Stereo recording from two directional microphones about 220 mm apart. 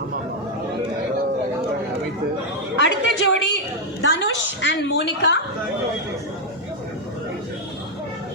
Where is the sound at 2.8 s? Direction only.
55° left (ahead or behind).